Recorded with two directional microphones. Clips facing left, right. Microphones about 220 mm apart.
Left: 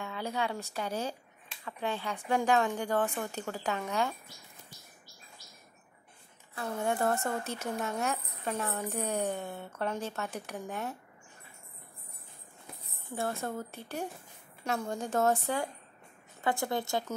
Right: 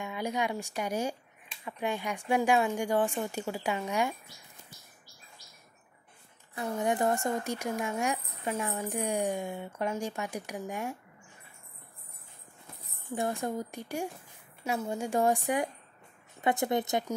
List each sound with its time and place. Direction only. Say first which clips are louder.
0.0 s speech: right 2 dB; 15° right (ahead or behind)
6.5 s speech: right 2 dB; 15° right (ahead or behind)
13.1 s a woman's voice: right 3 dB; 15° right (ahead or behind)